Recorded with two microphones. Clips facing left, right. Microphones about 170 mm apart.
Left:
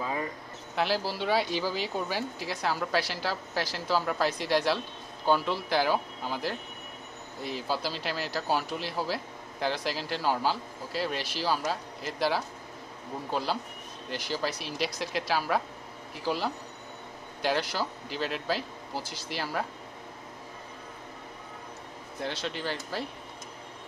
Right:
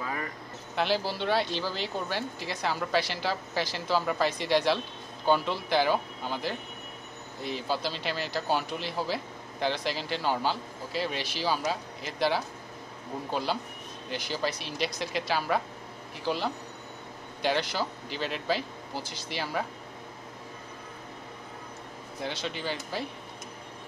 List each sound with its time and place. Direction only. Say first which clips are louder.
0.0 s a sound: left 2 dB; 20° left (ahead or behind)
0.7 s speech: right 1 dB; 5° left (ahead or behind)
22.2 s speech: even; centre (ahead or behind)